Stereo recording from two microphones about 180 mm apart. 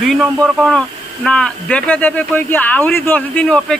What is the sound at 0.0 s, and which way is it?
Speech, centre (ahead or behind).